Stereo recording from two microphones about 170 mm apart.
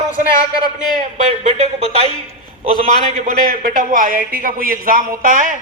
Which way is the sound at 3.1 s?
55° right (ahead or behind).